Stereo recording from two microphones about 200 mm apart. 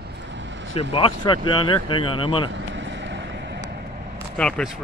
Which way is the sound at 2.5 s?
65° right (ahead or behind).